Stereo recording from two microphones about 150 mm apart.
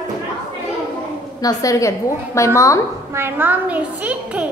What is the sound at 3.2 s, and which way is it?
A child's voice, 15° right (ahead or behind).